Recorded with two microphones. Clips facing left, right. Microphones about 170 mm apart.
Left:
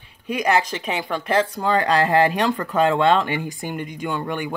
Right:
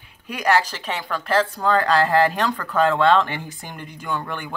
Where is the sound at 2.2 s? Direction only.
10° left (ahead or behind).